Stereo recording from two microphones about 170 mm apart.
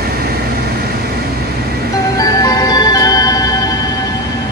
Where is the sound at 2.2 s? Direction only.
20° left (ahead or behind).